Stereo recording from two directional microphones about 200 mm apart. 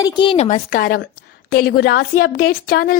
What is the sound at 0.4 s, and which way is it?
A woman's voice, 40° left (ahead or behind).